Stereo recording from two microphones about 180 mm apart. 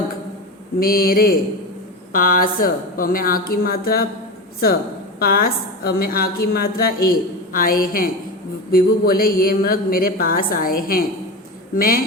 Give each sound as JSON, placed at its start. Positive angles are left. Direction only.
{"t": 0.8, "sound": "a woman's voice", "side_deg": 55}
{"t": 5.2, "sound": "a woman's voice", "side_deg": 55}